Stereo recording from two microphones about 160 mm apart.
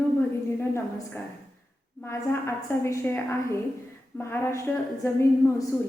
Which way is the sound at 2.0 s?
15° left (ahead or behind).